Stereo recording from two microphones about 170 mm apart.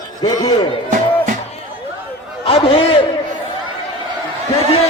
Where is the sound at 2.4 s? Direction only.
35° left (ahead or behind).